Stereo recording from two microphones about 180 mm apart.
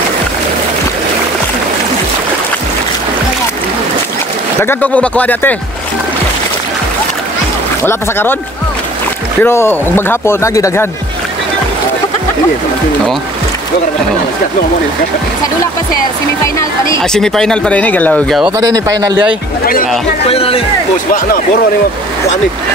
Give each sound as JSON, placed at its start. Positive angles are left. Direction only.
{"t": 4.6, "sound": "speech", "side_deg": 10}
{"t": 7.8, "sound": "speech", "side_deg": 10}
{"t": 9.4, "sound": "speech", "side_deg": 15}
{"t": 17.1, "sound": "speech", "side_deg": 5}
{"t": 18.6, "sound": "a man's voice", "side_deg": -20}
{"t": 19.6, "sound": "speech", "side_deg": 50}
{"t": 20.2, "sound": "speech", "side_deg": 30}